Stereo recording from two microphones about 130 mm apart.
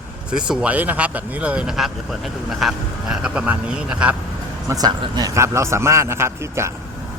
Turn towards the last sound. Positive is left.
turn(degrees=-20)  # may be behind; listen again after turning